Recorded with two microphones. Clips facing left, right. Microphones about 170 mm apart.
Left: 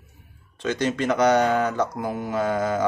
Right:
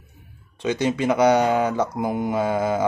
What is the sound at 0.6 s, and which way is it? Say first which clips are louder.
Speech: right 2 dB; 10° right (ahead or behind).